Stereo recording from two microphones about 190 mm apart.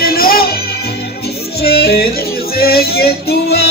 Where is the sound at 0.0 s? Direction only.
50° left (ahead or behind).